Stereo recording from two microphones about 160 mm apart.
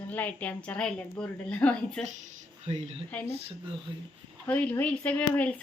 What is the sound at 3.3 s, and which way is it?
Speech, 40° right (ahead or behind).